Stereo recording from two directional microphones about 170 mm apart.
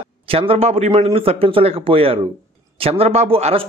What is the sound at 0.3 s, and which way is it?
Speech, 35° right (ahead or behind).